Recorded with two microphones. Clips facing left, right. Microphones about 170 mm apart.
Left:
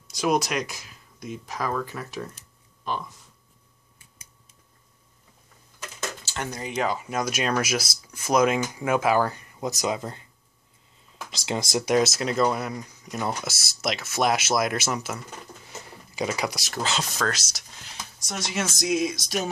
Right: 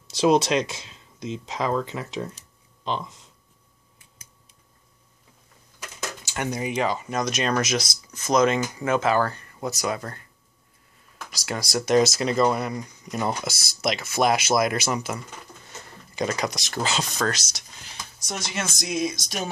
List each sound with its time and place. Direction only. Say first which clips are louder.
0.1 s speech: right 5 dB; 25° right (ahead or behind)
6.2 s speech: right 8 dB; 15° right (ahead or behind)
6.8 s speech: left 1 dB; 5° left (ahead or behind)
11.2 s speech: left 2 dB; 25° left (ahead or behind)
11.7 s speech: right 2 dB; 10° left (ahead or behind)
12.0 s speech: right 2 dB; centre (ahead or behind)